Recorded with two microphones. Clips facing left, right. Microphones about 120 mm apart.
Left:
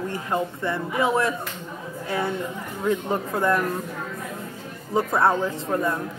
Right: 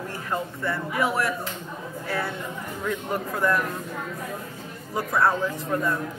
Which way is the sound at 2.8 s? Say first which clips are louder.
Left 5 dB; 25° left (ahead or behind).